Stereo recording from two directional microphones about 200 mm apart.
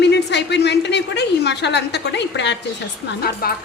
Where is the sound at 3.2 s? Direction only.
50° left (ahead or behind).